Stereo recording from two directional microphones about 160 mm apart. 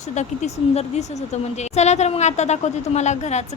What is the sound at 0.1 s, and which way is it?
Speech, 45° left (ahead or behind).